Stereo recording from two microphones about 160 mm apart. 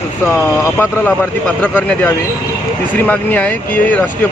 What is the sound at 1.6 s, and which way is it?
Speech, 10° left (ahead or behind).